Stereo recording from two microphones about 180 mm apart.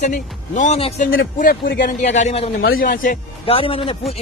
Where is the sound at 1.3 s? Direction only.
55° left (ahead or behind); by 2.5 s 35° left (ahead or behind).